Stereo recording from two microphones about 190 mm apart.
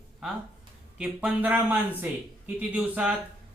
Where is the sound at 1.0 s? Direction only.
5° right (ahead or behind).